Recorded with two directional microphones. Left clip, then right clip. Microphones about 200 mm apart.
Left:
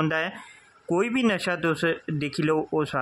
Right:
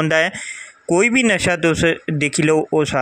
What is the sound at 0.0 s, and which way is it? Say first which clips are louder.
Speech: right 10 dB; 20° right (ahead or behind).